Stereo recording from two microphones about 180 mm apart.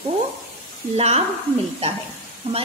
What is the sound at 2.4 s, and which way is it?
Speech, 30° right (ahead or behind).